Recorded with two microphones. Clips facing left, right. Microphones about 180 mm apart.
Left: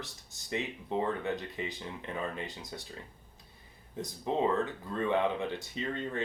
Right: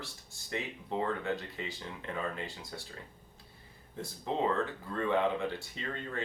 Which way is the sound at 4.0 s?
20° left (ahead or behind).